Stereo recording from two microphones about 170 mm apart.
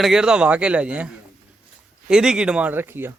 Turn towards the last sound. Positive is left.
turn(degrees=-10)  # may be behind; listen again after turning